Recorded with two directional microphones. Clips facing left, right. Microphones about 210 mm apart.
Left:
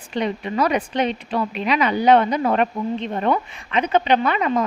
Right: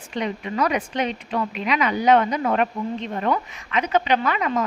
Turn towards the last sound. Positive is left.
turn(degrees=30)  # may be behind; listen again after turning